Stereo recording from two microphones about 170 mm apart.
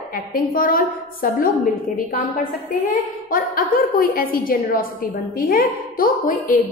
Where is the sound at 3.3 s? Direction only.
55° left (ahead or behind).